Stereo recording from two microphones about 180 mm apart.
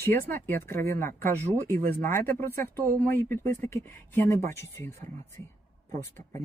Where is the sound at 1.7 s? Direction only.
15° left (ahead or behind).